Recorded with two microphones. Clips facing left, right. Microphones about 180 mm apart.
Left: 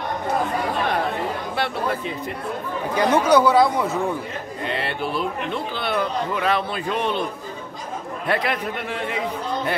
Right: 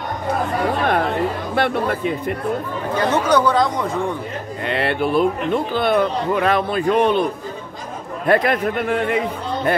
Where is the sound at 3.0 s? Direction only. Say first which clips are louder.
Left 1 dB; 10° left (ahead or behind).